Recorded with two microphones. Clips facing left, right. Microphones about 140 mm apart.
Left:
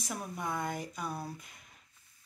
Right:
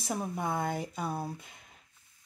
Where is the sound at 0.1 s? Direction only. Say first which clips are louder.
Right 5 dB; 30° right (ahead or behind).